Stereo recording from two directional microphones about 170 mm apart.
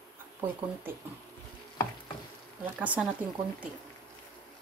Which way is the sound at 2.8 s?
10° right (ahead or behind).